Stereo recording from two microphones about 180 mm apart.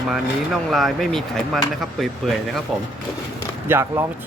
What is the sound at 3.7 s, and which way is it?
Speech, 15° right (ahead or behind).